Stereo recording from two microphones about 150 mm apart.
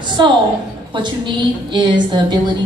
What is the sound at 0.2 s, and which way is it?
A woman's voice, 30° right (ahead or behind).